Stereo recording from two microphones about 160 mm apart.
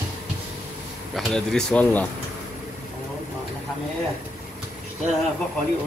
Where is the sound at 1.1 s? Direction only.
5° left (ahead or behind).